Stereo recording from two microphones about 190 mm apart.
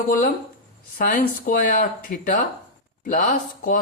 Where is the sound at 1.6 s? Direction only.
45° left (ahead or behind).